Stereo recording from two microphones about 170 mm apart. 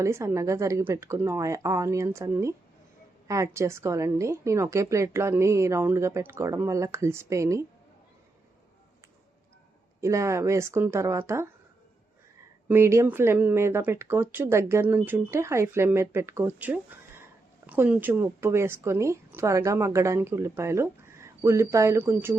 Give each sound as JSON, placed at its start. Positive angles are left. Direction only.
{"t": 0.0, "sound": "speech", "side_deg": -15}
{"t": 10.0, "sound": "speech", "side_deg": -15}
{"t": 12.6, "sound": "speech", "side_deg": -15}